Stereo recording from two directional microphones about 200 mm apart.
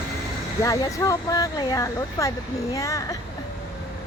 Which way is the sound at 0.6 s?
15° left (ahead or behind).